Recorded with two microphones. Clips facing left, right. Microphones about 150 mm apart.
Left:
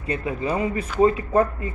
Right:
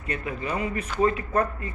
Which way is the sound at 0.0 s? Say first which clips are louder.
Left 5 dB; 25° left (ahead or behind).